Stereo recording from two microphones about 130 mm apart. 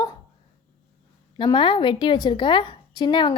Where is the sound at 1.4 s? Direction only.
40° left (ahead or behind).